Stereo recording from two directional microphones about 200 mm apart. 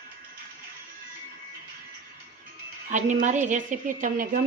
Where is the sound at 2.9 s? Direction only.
40° right (ahead or behind).